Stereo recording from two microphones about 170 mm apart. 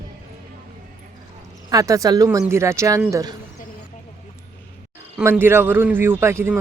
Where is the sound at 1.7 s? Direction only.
20° right (ahead or behind).